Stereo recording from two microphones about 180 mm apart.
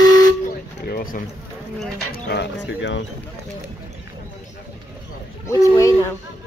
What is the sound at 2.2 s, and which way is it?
Speech, 65° left (ahead or behind).